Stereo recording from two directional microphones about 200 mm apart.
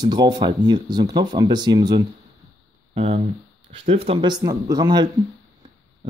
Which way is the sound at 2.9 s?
30° right (ahead or behind).